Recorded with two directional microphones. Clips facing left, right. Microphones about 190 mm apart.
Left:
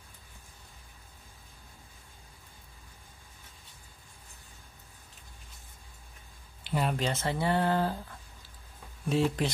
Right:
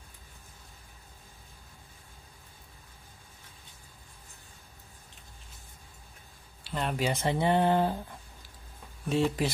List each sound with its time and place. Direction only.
6.7 s a sound: 5° left (ahead or behind)
7.0 s speech: 15° right (ahead or behind)
9.0 s speech: centre (ahead or behind)